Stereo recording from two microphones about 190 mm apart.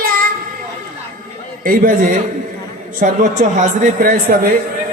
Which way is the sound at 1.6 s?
50° right (ahead or behind).